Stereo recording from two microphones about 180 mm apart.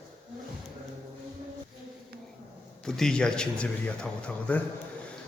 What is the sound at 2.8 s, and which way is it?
A man's voice, 5° left (ahead or behind).